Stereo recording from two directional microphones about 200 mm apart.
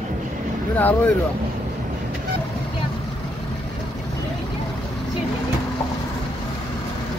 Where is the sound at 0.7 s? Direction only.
10° left (ahead or behind).